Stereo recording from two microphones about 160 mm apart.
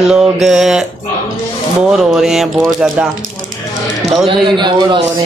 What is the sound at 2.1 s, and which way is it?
Speech, 5° right (ahead or behind).